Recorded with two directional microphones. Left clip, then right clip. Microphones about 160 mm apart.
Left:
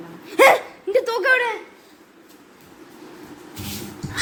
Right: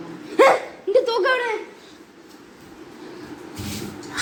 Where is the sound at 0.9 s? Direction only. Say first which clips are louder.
Even; centre (ahead or behind).